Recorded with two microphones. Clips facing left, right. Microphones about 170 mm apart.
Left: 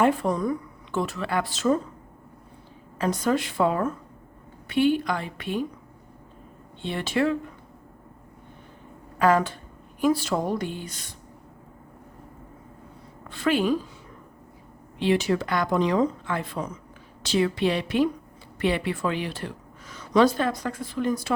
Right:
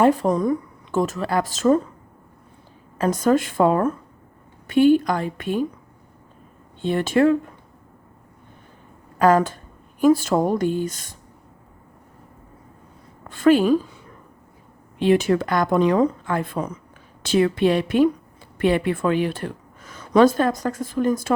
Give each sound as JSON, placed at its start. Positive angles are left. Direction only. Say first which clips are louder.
{"t": 0.0, "sound": "speech", "louder": "right 5 dB", "side_deg": -40}
{"t": 3.0, "sound": "speech", "louder": "right 5 dB", "side_deg": -45}
{"t": 6.8, "sound": "speech", "louder": "right 7 dB", "side_deg": -45}
{"t": 9.1, "sound": "speech", "louder": "right 4 dB", "side_deg": -45}
{"t": 13.2, "sound": "a woman's voice", "louder": "right 7 dB", "side_deg": -45}
{"t": 14.9, "sound": "speech", "louder": "right 5 dB", "side_deg": -50}